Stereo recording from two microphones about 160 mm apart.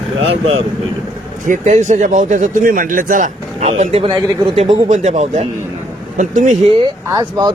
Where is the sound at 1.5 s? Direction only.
50° right (ahead or behind).